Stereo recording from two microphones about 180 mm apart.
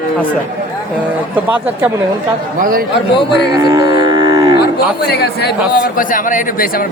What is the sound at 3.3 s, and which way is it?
Cattle, 70° left (ahead or behind).